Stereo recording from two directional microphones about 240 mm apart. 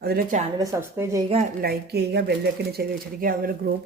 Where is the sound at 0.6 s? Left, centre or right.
Centre.